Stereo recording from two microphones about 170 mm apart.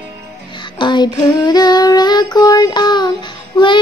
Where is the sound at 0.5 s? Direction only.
25° left (ahead or behind).